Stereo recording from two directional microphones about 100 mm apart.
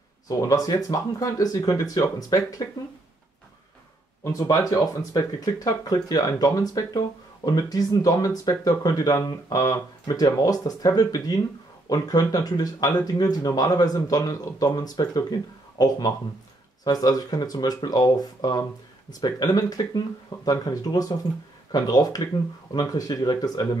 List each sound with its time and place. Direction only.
0.3 s speech: 35° left (ahead or behind)
4.2 s speech: 35° left (ahead or behind)